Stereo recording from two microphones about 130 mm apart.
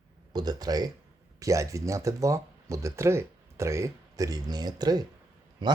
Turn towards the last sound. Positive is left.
turn(degrees=-35)  # may be behind; listen again after turning